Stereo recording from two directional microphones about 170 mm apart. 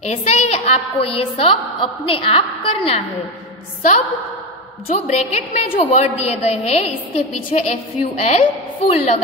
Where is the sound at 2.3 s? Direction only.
35° left (ahead or behind).